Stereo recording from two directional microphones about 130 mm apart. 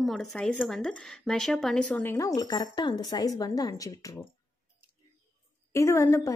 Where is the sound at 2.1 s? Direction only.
25° left (ahead or behind).